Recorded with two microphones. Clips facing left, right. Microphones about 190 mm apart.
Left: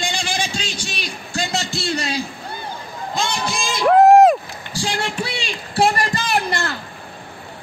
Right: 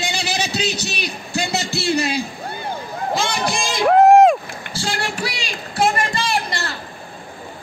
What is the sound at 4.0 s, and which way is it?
Vehicle, centre (ahead or behind).